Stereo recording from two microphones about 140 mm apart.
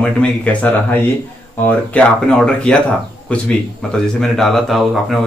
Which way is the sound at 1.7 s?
10° left (ahead or behind).